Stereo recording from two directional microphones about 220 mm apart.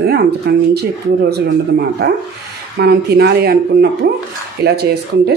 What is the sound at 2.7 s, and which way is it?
Speech, 45° right (ahead or behind).